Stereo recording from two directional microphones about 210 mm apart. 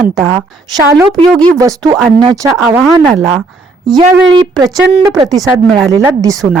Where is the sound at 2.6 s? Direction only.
5° right (ahead or behind).